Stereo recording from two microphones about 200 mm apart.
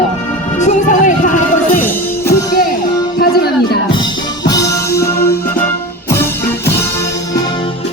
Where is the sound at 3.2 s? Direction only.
50° left (ahead or behind).